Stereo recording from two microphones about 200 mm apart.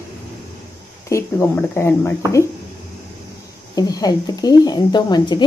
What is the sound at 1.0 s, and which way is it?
Speech, 15° left (ahead or behind).